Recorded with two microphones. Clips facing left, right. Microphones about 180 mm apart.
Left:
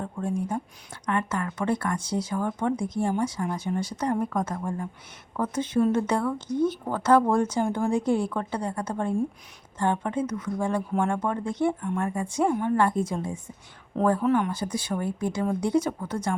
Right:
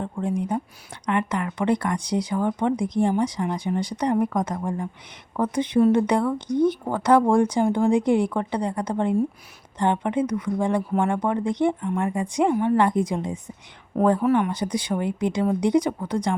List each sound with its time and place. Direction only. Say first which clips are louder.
0.0 s speech: right 3 dB; 15° right (ahead or behind)
14.5 s speech: right 4 dB; 15° right (ahead or behind)